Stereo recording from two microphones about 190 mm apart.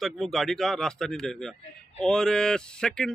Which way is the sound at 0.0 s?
Centre (ahead or behind).